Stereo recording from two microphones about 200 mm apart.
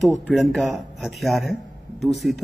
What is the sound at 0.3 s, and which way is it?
Speech, centre (ahead or behind).